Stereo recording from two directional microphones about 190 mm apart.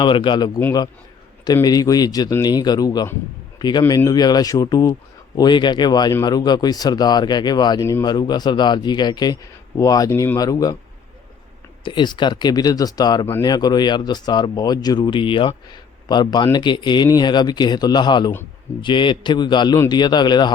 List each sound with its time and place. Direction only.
0.0 s speech: 25° left (ahead or behind)
11.8 s speech: 25° left (ahead or behind)